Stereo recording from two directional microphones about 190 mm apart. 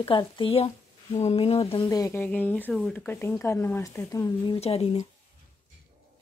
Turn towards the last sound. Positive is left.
turn(degrees=35)  # may be behind; listen again after turning